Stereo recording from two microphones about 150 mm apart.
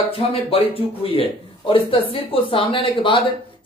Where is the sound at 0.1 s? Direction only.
40° left (ahead or behind).